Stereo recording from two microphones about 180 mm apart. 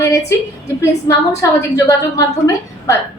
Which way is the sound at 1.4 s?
20° left (ahead or behind).